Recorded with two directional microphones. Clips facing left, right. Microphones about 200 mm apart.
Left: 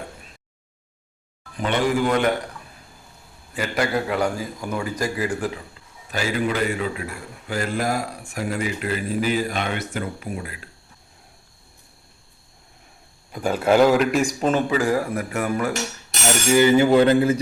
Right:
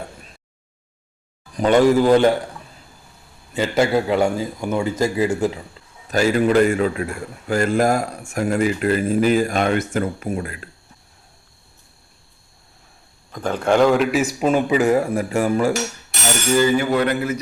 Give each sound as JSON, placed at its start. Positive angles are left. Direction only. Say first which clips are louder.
{"t": 1.5, "sound": "speech", "louder": "right 7 dB", "side_deg": -40}
{"t": 3.5, "sound": "a man's voice", "louder": "right 5 dB", "side_deg": -25}
{"t": 6.1, "sound": "a man's voice", "louder": "right 7 dB", "side_deg": -45}
{"t": 13.3, "sound": "speech", "louder": "even", "side_deg": 10}
{"t": 14.7, "sound": "a man's voice", "louder": "right 4 dB", "side_deg": -20}
{"t": 16.5, "sound": "a sound", "louder": "left 2 dB", "side_deg": 15}